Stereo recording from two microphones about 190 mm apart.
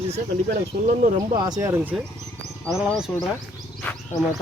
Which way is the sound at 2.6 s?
Centre (ahead or behind).